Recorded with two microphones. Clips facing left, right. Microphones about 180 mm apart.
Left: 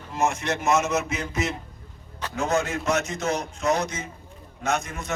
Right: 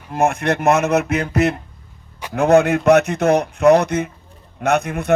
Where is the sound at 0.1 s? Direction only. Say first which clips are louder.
Right 7 dB; 55° right (ahead or behind).